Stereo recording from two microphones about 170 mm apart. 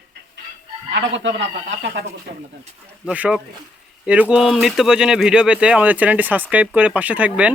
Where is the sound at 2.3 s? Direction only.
65° right (ahead or behind).